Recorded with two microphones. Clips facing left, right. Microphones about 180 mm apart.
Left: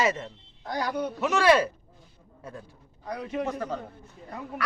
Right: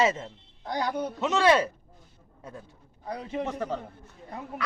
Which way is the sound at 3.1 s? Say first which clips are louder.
Left 1 dB; 25° right (ahead or behind).